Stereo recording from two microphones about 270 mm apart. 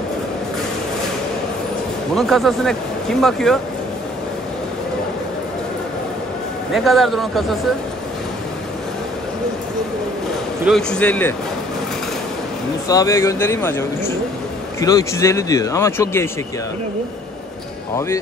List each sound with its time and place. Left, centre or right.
2.1 s speech: centre
6.7 s speech: centre
10.6 s speech: centre
12.8 s speech: centre
17.9 s speech: centre